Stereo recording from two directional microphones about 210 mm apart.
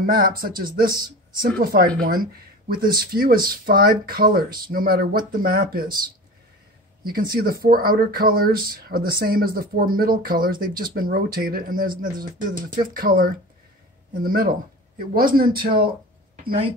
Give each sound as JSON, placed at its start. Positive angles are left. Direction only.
{"t": 0.0, "sound": "speech", "side_deg": -45}
{"t": 7.0, "sound": "speech", "side_deg": -45}